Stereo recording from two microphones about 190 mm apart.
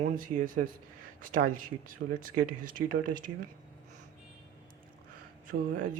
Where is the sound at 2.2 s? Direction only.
45° right (ahead or behind).